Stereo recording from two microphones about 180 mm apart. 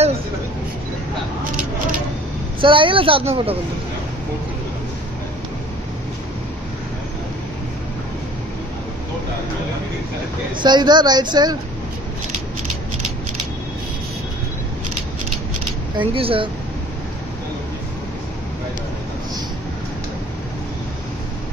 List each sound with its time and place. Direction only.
2.6 s speech: 30° right (ahead or behind)
10.5 s speech: 25° right (ahead or behind)
16.0 s speech: 30° right (ahead or behind)